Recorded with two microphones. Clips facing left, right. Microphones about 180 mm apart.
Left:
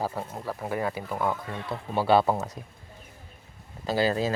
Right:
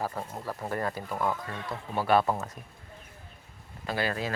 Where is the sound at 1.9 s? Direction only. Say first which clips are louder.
Left 3 dB; 30° left (ahead or behind).